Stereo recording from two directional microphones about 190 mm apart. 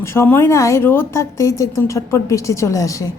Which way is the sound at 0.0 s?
15° left (ahead or behind).